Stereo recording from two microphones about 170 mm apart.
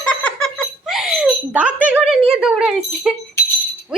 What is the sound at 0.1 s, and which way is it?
Giggle, 5° left (ahead or behind).